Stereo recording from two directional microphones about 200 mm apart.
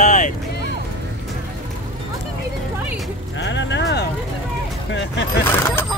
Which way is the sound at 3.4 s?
60° left (ahead or behind).